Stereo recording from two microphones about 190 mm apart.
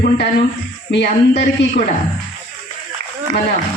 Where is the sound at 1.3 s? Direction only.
40° left (ahead or behind).